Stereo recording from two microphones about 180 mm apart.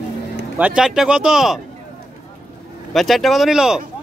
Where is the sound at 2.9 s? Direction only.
Centre (ahead or behind).